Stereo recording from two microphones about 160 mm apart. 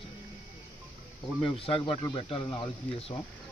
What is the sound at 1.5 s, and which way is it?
Speech, 35° left (ahead or behind).